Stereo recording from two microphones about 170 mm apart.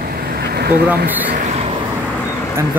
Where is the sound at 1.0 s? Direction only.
10° right (ahead or behind).